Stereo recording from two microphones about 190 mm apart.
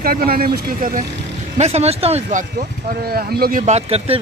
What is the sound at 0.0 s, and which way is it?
Speech, 50° right (ahead or behind).